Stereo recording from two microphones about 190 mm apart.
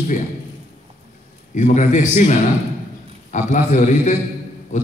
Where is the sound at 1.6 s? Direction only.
40° left (ahead or behind).